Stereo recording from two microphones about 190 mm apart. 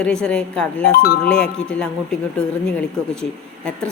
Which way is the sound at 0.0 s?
5° left (ahead or behind).